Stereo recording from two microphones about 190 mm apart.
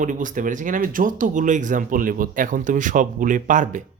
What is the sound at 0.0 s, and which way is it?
Speech, 45° right (ahead or behind).